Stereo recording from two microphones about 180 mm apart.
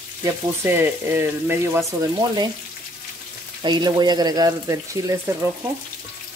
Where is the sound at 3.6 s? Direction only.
25° right (ahead or behind).